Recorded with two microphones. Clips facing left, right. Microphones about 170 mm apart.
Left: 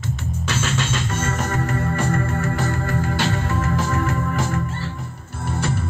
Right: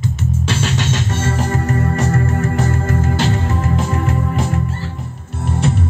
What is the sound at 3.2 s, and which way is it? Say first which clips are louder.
Music: right 4 dB; 25° right (ahead or behind).